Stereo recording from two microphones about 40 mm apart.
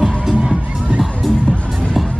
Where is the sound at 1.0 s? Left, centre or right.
Centre.